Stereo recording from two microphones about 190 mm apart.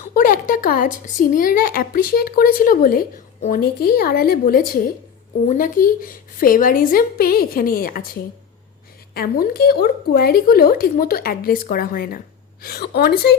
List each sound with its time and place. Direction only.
0.1 s a woman's voice: 45° left (ahead or behind)